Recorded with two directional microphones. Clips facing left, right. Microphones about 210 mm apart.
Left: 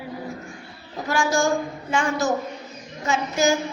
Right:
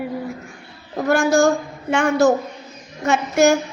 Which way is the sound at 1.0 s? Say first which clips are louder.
Right 6 dB; 55° right (ahead or behind).